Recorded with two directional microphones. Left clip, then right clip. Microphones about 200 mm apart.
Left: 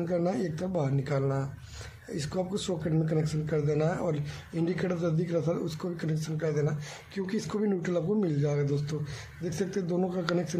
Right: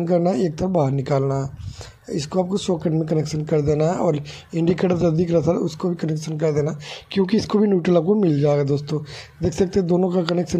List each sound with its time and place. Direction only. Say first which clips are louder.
0.0 s speech: right 10 dB; 30° right (ahead or behind)